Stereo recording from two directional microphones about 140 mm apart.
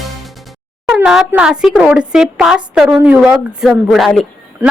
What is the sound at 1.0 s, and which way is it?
A woman's voice, 5° right (ahead or behind).